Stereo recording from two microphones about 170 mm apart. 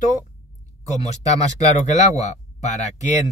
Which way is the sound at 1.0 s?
40° left (ahead or behind).